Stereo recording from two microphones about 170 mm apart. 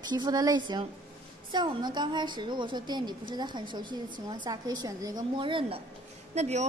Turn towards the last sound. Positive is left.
turn(degrees=-40)  # may be behind; listen again after turning